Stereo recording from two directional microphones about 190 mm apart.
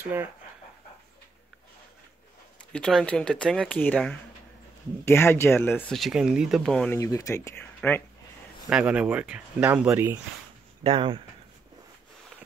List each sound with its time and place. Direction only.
0.0 s speech: 10° right (ahead or behind)
2.7 s speech: 5° left (ahead or behind)
7.0 s speech: 15° left (ahead or behind)
8.6 s speech: 5° right (ahead or behind)
10.8 s speech: 30° right (ahead or behind)